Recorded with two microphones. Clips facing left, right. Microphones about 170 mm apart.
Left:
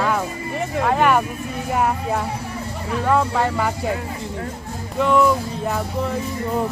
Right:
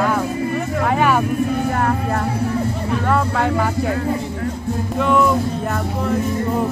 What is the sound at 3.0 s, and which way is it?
Speech, 10° left (ahead or behind).